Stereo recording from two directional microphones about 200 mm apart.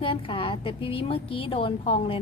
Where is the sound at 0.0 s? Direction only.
25° left (ahead or behind).